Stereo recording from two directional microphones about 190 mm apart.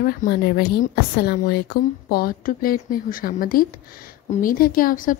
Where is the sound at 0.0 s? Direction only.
50° left (ahead or behind).